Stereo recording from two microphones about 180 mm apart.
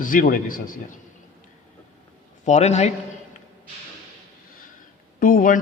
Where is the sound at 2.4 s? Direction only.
40° left (ahead or behind).